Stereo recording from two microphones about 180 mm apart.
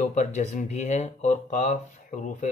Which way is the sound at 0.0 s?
45° left (ahead or behind).